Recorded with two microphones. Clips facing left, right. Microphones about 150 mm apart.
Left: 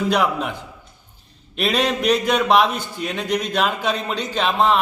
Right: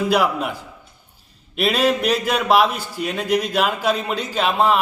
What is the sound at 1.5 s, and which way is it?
A man's voice, 5° right (ahead or behind).